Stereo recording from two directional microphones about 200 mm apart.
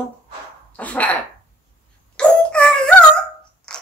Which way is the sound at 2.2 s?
5° left (ahead or behind).